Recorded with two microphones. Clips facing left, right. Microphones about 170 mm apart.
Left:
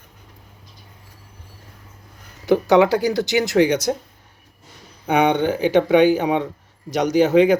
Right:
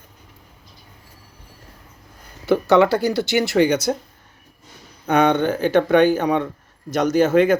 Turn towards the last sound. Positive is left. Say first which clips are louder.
# left 1 dB
turn(degrees=15)  # may be behind; listen again after turning